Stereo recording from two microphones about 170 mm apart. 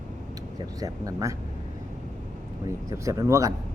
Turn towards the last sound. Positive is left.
turn(degrees=-20)  # may be behind; listen again after turning